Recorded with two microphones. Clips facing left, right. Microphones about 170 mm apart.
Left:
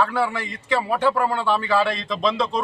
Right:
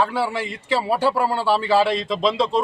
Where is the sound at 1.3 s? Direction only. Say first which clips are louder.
Right 2 dB; 30° right (ahead or behind).